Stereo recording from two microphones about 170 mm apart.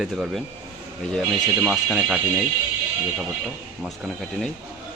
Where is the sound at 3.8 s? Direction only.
Centre (ahead or behind).